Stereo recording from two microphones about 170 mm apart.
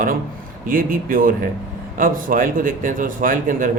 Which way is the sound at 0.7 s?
55° right (ahead or behind).